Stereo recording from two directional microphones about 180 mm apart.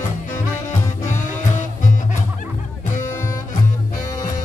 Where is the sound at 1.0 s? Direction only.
40° left (ahead or behind).